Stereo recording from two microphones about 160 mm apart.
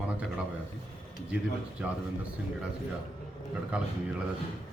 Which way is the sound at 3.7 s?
5° right (ahead or behind).